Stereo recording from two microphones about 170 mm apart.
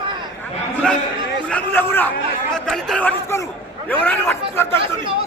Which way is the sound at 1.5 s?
10° left (ahead or behind).